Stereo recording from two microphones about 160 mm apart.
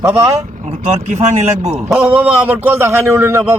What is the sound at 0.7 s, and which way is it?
Speech, 40° right (ahead or behind).